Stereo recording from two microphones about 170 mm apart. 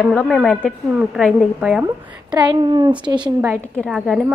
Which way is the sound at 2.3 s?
25° right (ahead or behind).